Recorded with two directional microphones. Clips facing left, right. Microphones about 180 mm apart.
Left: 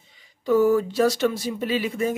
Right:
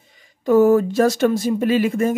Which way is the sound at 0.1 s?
50° right (ahead or behind).